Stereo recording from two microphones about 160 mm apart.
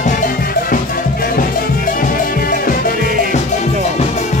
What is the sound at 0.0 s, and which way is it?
Music, 55° left (ahead or behind).